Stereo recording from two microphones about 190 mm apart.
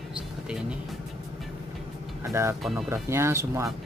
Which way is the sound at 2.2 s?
15° right (ahead or behind).